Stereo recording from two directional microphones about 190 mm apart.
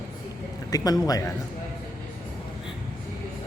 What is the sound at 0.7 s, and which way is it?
Speech, 20° left (ahead or behind).